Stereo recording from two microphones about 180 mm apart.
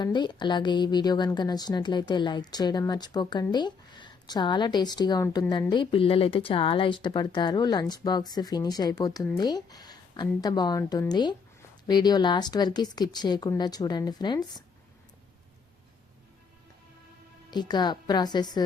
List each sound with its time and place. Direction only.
0.0 s speech: 25° left (ahead or behind)
17.5 s speech: 25° left (ahead or behind)